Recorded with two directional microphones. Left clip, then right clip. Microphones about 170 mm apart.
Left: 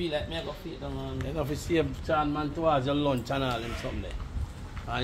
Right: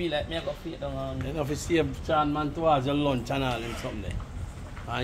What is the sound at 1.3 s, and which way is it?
Speech, 5° left (ahead or behind).